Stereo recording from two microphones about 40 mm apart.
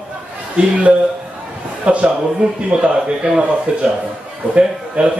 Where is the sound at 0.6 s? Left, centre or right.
Right.